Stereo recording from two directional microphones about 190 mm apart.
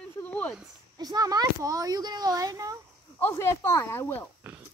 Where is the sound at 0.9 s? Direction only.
20° right (ahead or behind).